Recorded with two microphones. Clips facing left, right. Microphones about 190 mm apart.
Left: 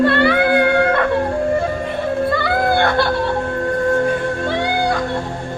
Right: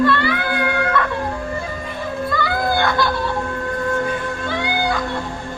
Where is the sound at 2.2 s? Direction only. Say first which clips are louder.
Left 1 dB; 65° left (ahead or behind).